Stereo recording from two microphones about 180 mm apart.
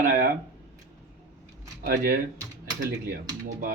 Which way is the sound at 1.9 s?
60° right (ahead or behind).